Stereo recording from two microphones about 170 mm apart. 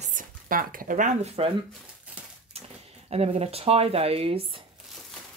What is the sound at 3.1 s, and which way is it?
Speech, 35° right (ahead or behind).